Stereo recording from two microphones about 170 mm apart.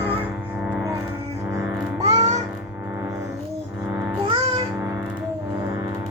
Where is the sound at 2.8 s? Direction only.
15° right (ahead or behind).